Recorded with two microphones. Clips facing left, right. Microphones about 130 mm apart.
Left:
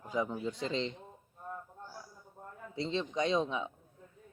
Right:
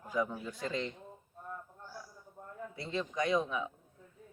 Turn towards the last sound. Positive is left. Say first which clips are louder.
# even
turn(degrees=25)  # may be behind; listen again after turning